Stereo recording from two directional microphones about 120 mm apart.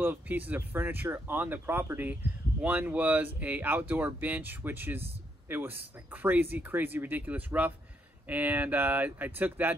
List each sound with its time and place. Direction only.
0.0 s speech: 15° right (ahead or behind)